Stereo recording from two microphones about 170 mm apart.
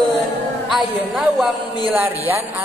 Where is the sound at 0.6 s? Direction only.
Centre (ahead or behind).